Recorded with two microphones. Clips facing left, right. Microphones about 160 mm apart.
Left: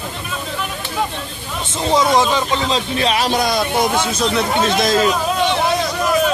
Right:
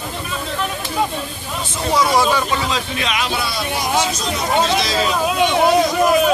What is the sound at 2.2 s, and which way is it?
Speech, 25° left (ahead or behind).